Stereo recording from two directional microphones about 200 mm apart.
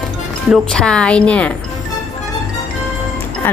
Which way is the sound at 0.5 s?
5° left (ahead or behind).